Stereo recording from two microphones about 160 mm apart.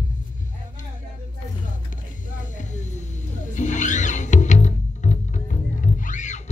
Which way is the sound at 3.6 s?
50° left (ahead or behind).